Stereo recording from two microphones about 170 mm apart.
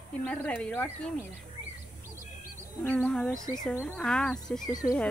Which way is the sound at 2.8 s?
10° left (ahead or behind).